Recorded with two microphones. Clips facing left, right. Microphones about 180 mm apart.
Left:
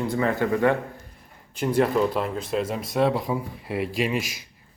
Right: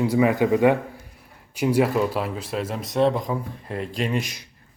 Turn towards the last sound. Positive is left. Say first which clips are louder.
# even
turn(degrees=5)  # may be behind; listen again after turning